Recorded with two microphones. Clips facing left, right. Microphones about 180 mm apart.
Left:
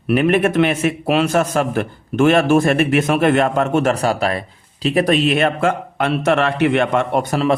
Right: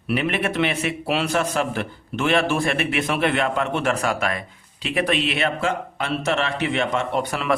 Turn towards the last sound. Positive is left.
turn(degrees=45)  # may be behind; listen again after turning